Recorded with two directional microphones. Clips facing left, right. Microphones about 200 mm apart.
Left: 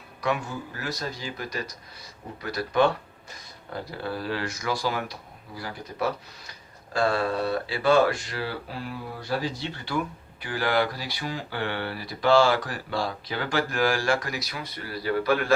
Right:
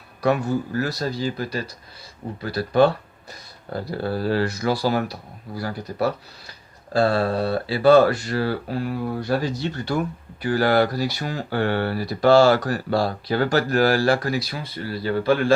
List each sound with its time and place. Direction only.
0.2 s speech: 40° right (ahead or behind)